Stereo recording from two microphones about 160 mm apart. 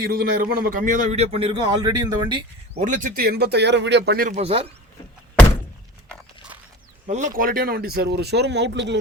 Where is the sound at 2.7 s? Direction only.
50° right (ahead or behind); by 4.3 s 90° right.